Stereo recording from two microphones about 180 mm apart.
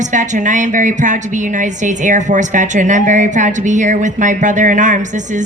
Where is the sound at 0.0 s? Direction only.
45° right (ahead or behind).